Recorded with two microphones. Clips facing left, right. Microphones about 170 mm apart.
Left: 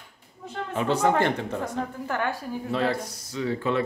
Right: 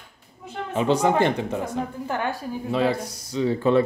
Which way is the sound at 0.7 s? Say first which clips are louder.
Right 3 dB; 20° right (ahead or behind).